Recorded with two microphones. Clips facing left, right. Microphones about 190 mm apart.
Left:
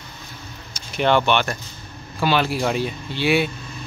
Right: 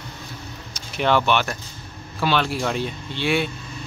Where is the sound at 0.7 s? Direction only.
Centre (ahead or behind).